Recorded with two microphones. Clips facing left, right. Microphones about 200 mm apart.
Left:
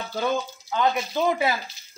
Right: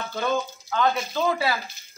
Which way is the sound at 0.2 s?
15° left (ahead or behind).